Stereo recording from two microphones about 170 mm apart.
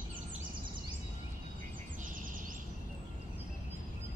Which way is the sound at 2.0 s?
50° right (ahead or behind).